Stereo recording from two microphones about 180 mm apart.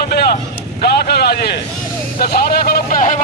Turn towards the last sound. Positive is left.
turn(degrees=50)  # may be behind; listen again after turning